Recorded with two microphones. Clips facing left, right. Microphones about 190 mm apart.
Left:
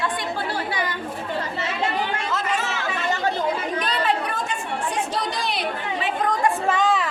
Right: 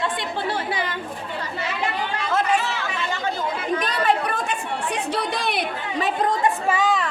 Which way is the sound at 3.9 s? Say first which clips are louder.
Right 1 dB; 55° right (ahead or behind).